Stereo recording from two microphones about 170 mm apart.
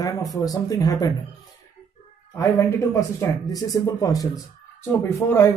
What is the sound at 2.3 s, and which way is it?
Speech, 15° left (ahead or behind).